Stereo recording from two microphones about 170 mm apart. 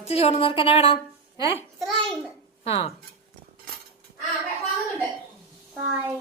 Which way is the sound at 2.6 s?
35° left (ahead or behind).